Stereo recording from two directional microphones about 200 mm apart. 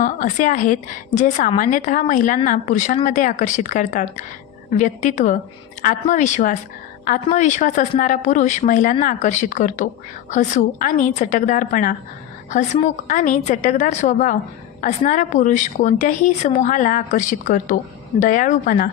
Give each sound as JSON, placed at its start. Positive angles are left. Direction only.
{"t": 0.0, "sound": "a woman's voice", "side_deg": 40}